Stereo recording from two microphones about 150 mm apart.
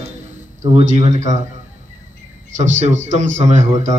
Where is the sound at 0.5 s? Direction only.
55° right (ahead or behind).